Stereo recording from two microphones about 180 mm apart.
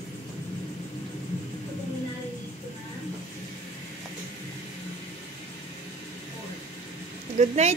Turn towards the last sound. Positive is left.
turn(degrees=-35)  # may be behind; listen again after turning